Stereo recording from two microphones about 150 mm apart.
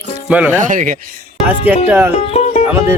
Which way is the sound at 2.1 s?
45° left (ahead or behind).